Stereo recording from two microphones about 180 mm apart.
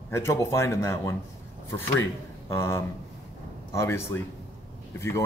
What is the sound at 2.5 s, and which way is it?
Speech, 15° left (ahead or behind).